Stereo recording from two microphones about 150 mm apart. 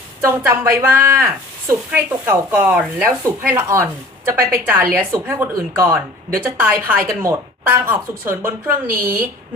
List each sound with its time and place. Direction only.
0.2 s a woman's voice: 15° right (ahead or behind)